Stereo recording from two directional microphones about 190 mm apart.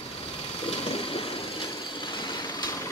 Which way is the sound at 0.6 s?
30° left (ahead or behind).